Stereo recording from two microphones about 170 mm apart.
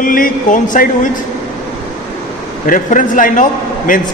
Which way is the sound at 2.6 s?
50° left (ahead or behind).